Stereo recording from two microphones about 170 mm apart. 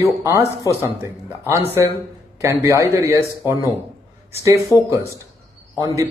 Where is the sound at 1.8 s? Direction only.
20° right (ahead or behind).